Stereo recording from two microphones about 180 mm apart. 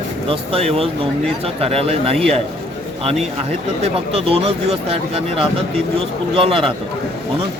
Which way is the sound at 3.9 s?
30° right (ahead or behind).